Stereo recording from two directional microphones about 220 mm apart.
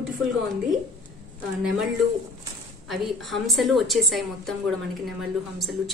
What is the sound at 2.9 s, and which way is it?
A woman's voice, centre (ahead or behind).